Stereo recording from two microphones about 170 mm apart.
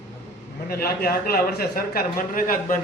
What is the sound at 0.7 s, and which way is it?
A man's voice, 65° left (ahead or behind).